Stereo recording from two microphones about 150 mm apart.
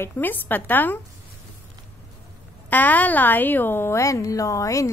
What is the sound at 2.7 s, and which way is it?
A child's voice, 10° left (ahead or behind).